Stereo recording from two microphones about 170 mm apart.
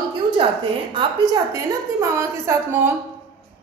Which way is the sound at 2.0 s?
15° right (ahead or behind).